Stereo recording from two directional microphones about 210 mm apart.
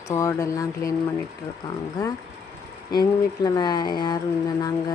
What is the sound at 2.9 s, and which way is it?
Speech, 20° left (ahead or behind).